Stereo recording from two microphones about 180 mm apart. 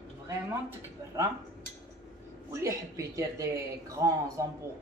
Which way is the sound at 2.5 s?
15° right (ahead or behind).